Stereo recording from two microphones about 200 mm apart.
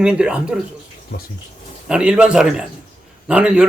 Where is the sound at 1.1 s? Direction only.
55° left (ahead or behind).